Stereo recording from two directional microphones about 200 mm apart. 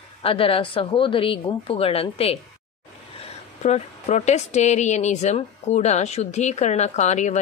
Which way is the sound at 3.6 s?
35° left (ahead or behind).